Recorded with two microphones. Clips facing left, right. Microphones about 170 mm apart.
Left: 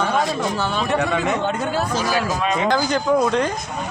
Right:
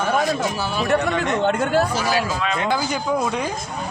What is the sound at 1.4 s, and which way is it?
Speech, 60° right (ahead or behind).